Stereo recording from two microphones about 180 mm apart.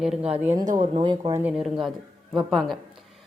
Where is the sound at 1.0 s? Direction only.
30° right (ahead or behind).